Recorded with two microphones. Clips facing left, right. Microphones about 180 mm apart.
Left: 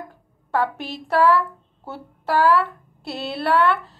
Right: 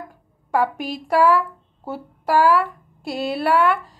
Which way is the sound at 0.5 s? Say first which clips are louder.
Right 2 dB; 10° right (ahead or behind).